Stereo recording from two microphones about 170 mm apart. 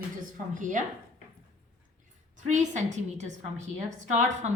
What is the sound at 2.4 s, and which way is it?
A woman's voice, 45° right (ahead or behind).